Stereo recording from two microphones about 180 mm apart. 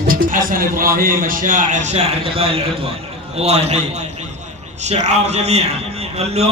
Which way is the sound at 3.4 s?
35° right (ahead or behind).